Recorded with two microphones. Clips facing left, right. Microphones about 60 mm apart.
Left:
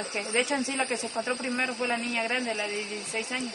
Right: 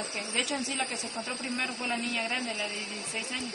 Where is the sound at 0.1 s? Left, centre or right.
Left.